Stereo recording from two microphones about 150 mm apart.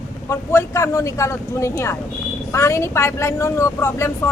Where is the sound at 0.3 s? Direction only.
15° left (ahead or behind).